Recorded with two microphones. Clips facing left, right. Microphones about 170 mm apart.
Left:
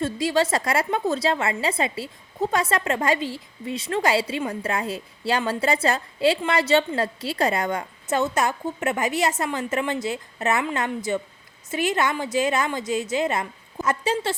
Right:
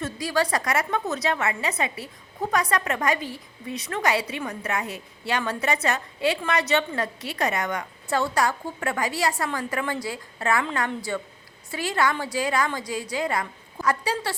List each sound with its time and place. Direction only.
0.0 s a woman's voice: 25° left (ahead or behind)